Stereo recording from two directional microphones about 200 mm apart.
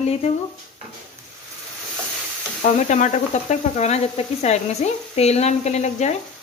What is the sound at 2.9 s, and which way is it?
Sizzle, 35° left (ahead or behind).